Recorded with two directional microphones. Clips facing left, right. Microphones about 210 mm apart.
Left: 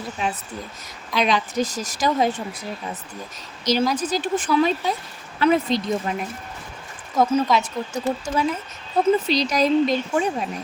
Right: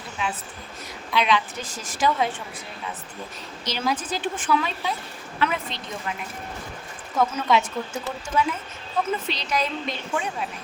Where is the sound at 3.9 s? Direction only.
40° left (ahead or behind).